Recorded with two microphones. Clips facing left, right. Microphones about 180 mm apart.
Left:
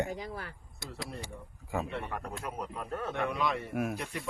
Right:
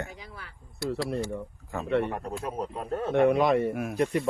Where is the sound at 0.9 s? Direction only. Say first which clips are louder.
Right 12 dB; 75° right (ahead or behind).